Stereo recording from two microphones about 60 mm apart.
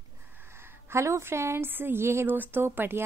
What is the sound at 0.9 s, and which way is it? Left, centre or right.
A woman's voice, right.